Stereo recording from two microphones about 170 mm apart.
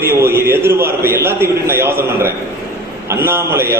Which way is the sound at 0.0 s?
15° right (ahead or behind).